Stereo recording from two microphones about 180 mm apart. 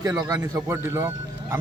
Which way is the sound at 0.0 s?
15° right (ahead or behind).